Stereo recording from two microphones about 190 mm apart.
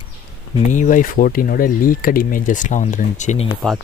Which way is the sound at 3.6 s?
5° left (ahead or behind).